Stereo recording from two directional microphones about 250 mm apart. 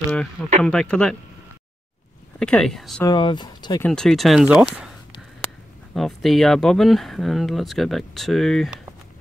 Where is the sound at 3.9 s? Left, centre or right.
Centre.